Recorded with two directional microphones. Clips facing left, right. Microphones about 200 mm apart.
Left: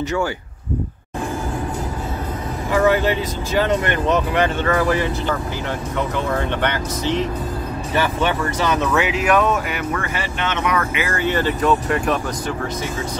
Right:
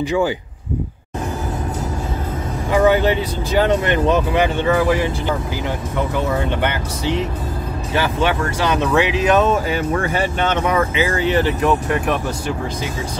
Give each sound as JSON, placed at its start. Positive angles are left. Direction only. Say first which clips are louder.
{"t": 0.0, "sound": "speech", "louder": "right 3 dB", "side_deg": -15}
{"t": 2.7, "sound": "speech", "louder": "right 2 dB", "side_deg": -15}
{"t": 8.6, "sound": "speech", "louder": "right 3 dB", "side_deg": -15}
{"t": 11.3, "sound": "speech", "louder": "even", "side_deg": -15}